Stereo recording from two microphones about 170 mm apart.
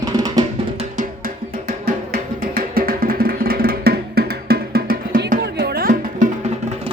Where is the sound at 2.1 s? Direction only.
60° right (ahead or behind).